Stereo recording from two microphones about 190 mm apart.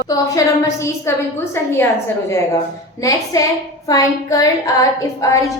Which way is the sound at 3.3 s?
20° left (ahead or behind).